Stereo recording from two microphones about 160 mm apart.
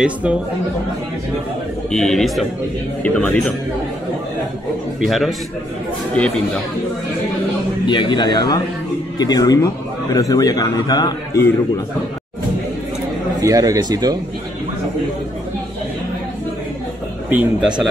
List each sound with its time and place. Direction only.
0.0 s speech: 10° right (ahead or behind)
1.9 s a man's voice: 5° left (ahead or behind)
5.0 s a man's voice: centre (ahead or behind)
7.8 s speech: 30° left (ahead or behind)
13.4 s a man's voice: 20° right (ahead or behind)
17.3 s speech: 10° right (ahead or behind)